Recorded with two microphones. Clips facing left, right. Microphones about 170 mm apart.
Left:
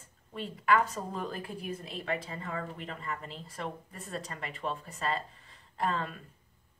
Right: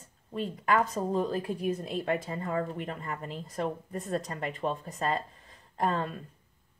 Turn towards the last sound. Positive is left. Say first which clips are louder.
# right 3 dB
turn(degrees=-40)  # may be behind; listen again after turning